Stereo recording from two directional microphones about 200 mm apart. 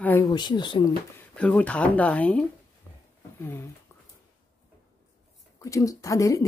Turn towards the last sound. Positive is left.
turn(degrees=15)  # may be behind; listen again after turning